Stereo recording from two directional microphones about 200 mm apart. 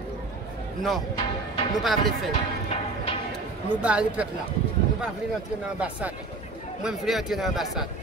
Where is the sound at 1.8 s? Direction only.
Centre (ahead or behind).